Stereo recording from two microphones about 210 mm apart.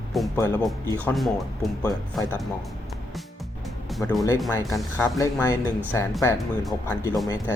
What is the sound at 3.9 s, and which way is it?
Speech, centre (ahead or behind).